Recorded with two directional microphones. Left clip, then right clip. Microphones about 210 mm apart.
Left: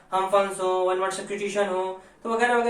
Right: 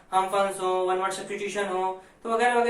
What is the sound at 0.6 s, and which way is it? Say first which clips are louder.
Speech: left 2 dB; 5° left (ahead or behind).